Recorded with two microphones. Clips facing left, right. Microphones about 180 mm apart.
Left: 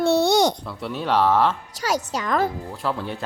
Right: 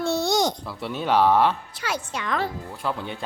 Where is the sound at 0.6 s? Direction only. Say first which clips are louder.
Even; centre (ahead or behind).